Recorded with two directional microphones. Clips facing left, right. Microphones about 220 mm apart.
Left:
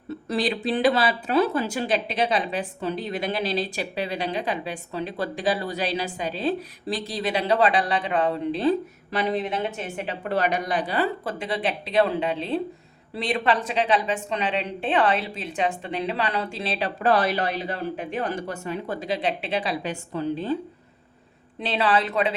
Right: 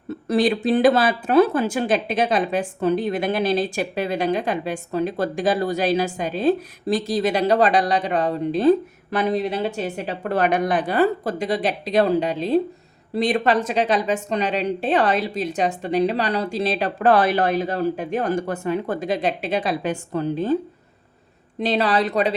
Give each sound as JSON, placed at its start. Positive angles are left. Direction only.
{"t": 0.3, "sound": "speech", "side_deg": -45}
{"t": 21.6, "sound": "speech", "side_deg": -40}